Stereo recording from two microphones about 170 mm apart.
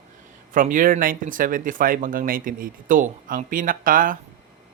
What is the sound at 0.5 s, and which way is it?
Speech, 50° right (ahead or behind).